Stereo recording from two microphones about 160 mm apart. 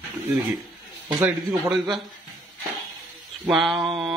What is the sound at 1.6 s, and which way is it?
Speech, centre (ahead or behind).